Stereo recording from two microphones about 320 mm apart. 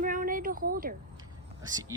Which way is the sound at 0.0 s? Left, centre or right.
Right.